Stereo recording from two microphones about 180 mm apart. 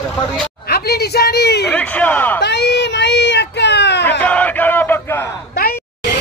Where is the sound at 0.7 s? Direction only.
60° left (ahead or behind).